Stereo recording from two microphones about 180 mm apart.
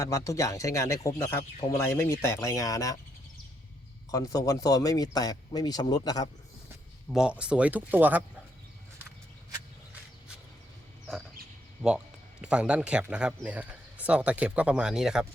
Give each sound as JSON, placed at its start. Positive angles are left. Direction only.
{"t": 0.0, "sound": "speech", "side_deg": 15}
{"t": 4.1, "sound": "speech", "side_deg": 20}
{"t": 7.1, "sound": "speech", "side_deg": -5}
{"t": 11.8, "sound": "a man's voice", "side_deg": -5}